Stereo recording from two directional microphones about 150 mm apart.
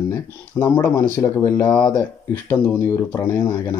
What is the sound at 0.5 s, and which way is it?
Speech, 15° left (ahead or behind).